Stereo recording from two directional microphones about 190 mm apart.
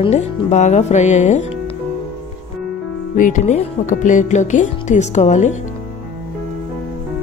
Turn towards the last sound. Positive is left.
turn(degrees=40)  # may be behind; listen again after turning